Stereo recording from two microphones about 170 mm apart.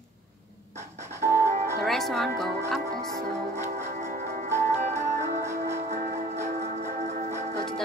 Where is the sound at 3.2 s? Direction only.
60° right (ahead or behind); by 7.5 s 45° right (ahead or behind).